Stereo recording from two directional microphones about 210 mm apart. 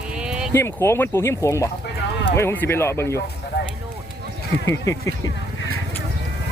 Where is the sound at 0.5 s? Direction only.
10° left (ahead or behind).